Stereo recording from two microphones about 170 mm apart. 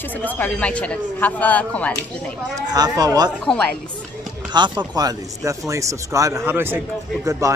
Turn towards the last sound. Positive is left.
turn(degrees=-20)  # may be behind; listen again after turning